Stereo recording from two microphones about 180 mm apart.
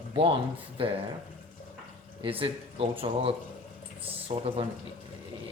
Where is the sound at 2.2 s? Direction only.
30° right (ahead or behind).